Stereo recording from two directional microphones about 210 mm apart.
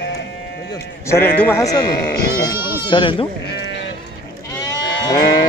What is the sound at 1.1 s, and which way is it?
Speech, 10° left (ahead or behind).